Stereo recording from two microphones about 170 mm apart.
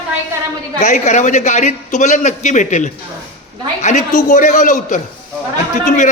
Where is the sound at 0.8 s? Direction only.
45° left (ahead or behind).